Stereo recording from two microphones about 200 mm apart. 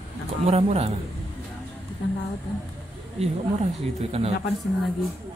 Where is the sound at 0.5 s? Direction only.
30° right (ahead or behind).